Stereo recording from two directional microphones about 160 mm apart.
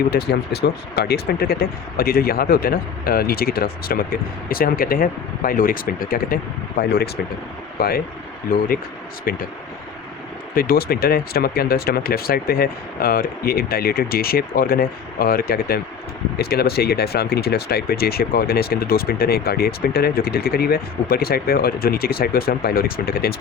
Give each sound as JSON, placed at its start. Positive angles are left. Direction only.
{"t": 0.1, "sound": "speech", "side_deg": 90}
{"t": 9.3, "sound": "speech", "side_deg": 70}
{"t": 10.5, "sound": "speech", "side_deg": 70}